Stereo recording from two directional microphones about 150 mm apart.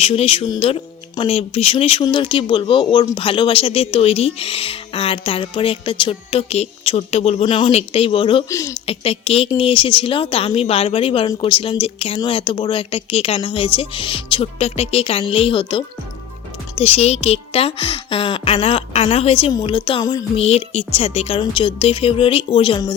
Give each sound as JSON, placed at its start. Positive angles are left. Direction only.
{"t": 0.0, "sound": "speech", "side_deg": 40}
{"t": 8.4, "sound": "speech", "side_deg": 20}
{"t": 8.9, "sound": "speech", "side_deg": 40}
{"t": 20.3, "sound": "speech", "side_deg": 45}